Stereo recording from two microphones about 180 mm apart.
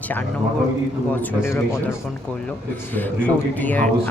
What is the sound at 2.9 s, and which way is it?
Speech, 10° left (ahead or behind).